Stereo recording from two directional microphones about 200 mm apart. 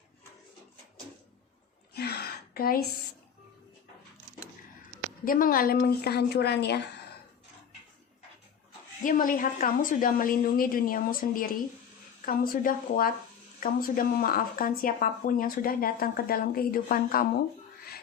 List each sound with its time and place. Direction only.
1.9 s a sound: 55° left (ahead or behind)
5.2 s speech: 45° left (ahead or behind)
9.0 s speech: 45° left (ahead or behind)